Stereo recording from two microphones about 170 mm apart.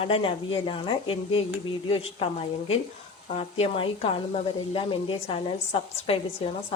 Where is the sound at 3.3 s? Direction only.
35° left (ahead or behind).